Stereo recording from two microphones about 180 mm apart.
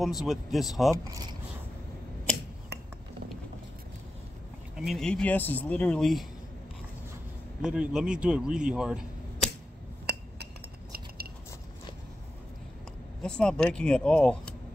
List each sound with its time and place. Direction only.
0.0 s speech: centre (ahead or behind)
4.7 s speech: centre (ahead or behind)
7.6 s speech: 5° right (ahead or behind)
10.0 s glass: 60° right (ahead or behind)
13.2 s speech: 5° left (ahead or behind)